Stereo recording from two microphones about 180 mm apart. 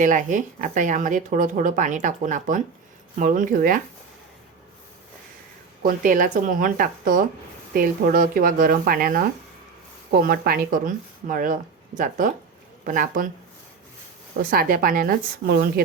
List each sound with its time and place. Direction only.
0.0 s speech: 45° right (ahead or behind)
5.8 s speech: 50° right (ahead or behind)
14.5 s speech: 55° right (ahead or behind)